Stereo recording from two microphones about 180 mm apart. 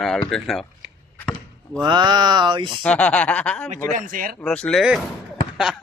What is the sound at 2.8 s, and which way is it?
Speech, 5° left (ahead or behind).